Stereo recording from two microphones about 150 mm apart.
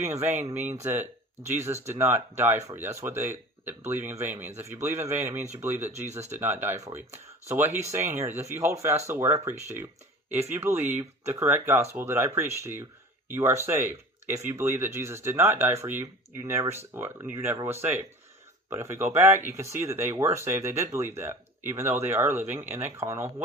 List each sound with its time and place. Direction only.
0.8 s speech: 15° right (ahead or behind)
6.1 s speech: 50° right (ahead or behind)
6.3 s speech: 15° right (ahead or behind)